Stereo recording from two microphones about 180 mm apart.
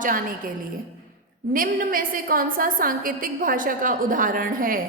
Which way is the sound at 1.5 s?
50° right (ahead or behind).